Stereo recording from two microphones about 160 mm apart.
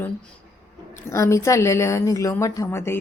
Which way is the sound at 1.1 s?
20° left (ahead or behind).